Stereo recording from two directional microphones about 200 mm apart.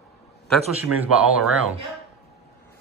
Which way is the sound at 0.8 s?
10° right (ahead or behind).